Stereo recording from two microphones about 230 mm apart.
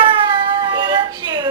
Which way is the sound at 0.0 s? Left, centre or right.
Right.